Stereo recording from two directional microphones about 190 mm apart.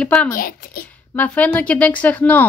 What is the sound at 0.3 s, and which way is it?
Speech, 50° left (ahead or behind).